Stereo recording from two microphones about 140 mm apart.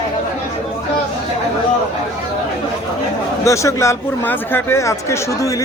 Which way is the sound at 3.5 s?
20° left (ahead or behind).